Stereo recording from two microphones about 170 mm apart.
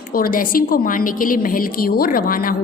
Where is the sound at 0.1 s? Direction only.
55° left (ahead or behind).